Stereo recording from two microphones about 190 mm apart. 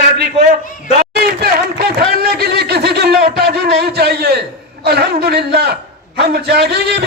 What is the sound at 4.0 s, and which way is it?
A man's voice, 55° right (ahead or behind).